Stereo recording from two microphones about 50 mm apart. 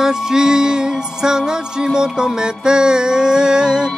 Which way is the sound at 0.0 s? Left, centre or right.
Centre.